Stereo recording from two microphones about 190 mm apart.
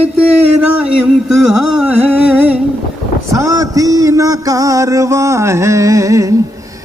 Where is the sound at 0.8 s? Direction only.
5° right (ahead or behind).